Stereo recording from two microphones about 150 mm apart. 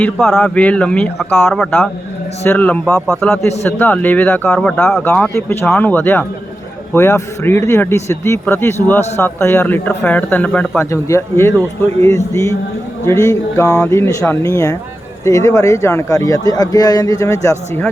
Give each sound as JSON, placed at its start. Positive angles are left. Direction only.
{"t": 0.4, "sound": "a man's voice", "side_deg": 10}
{"t": 1.5, "sound": "speech", "side_deg": 0}
{"t": 2.4, "sound": "a man's voice", "side_deg": 15}